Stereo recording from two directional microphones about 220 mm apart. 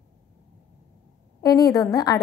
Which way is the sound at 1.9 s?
15° left (ahead or behind).